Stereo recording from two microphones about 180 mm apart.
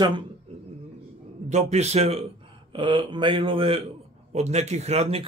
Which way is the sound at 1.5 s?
40° right (ahead or behind).